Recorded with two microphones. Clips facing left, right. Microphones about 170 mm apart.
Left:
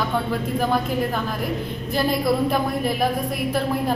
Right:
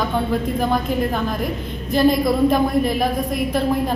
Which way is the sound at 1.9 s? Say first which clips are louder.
Right 5 dB; 5° left (ahead or behind).